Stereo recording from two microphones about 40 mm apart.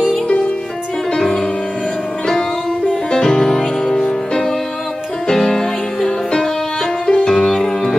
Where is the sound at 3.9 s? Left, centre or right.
Left.